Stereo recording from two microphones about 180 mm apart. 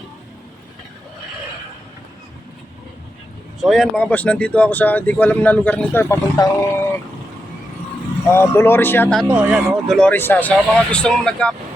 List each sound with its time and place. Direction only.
3.6 s speech: centre (ahead or behind); by 6.8 s 15° left (ahead or behind)
8.3 s speech: 15° left (ahead or behind)
9.3 s speech: 10° right (ahead or behind)
10.0 s speech: 10° left (ahead or behind)